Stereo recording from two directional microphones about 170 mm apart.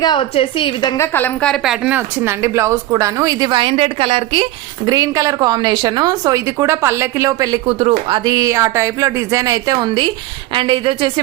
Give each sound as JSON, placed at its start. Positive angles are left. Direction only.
{"t": 0.0, "sound": "a woman's voice", "side_deg": 30}
{"t": 4.9, "sound": "speech", "side_deg": -20}
{"t": 7.7, "sound": "speech", "side_deg": -35}
{"t": 8.2, "sound": "speech", "side_deg": -20}